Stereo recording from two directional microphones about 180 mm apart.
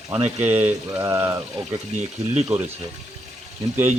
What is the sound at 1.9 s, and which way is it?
Speech, 40° right (ahead or behind).